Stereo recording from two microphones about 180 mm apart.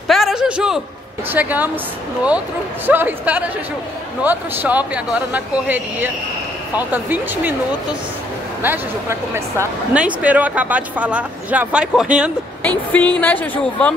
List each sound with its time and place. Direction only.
0.1 s a sound: centre (ahead or behind)
1.3 s speech: 10° right (ahead or behind)
2.9 s speech: 10° right (ahead or behind)
8.6 s speech: 15° right (ahead or behind)
12.6 s speech: 10° left (ahead or behind)